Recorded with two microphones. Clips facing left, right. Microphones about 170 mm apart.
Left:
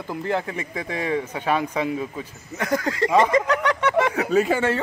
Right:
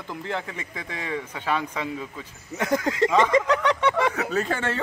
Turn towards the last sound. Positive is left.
turn(degrees=10)  # may be behind; listen again after turning